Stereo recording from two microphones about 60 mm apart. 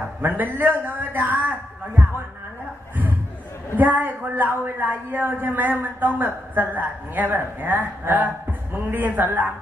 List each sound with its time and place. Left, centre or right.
0.2 s a man's voice: right
3.7 s a woman's voice: right